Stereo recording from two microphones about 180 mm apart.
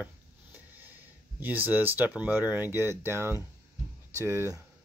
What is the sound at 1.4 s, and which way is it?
Speech, 10° right (ahead or behind).